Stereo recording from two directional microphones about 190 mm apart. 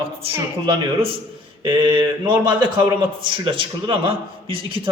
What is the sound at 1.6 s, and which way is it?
A man's voice, 25° right (ahead or behind).